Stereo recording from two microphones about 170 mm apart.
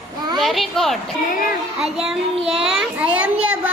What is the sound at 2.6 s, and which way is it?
Speech, 5° right (ahead or behind).